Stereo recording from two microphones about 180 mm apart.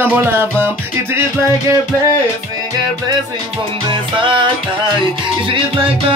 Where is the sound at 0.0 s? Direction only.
10° right (ahead or behind).